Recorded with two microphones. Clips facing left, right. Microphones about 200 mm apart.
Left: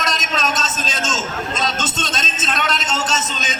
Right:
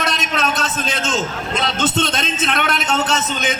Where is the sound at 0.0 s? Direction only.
60° right (ahead or behind).